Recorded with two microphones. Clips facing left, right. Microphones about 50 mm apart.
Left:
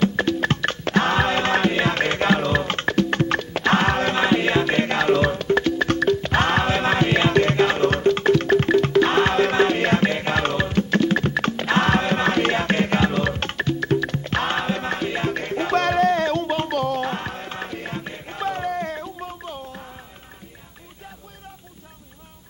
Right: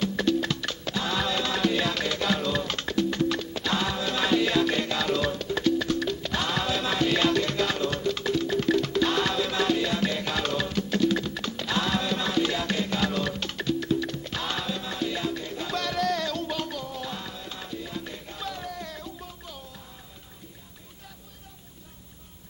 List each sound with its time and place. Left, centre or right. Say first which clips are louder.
0.0 s music: left 5 dB; left
4.2 s music: even; left
8.6 s music: left 7 dB; left
16.7 s music: left 11 dB; left
18.0 s music: left 8 dB; left